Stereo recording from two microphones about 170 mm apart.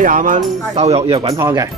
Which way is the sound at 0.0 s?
50° right (ahead or behind).